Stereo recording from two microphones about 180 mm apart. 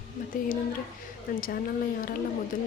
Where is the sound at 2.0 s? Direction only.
50° left (ahead or behind).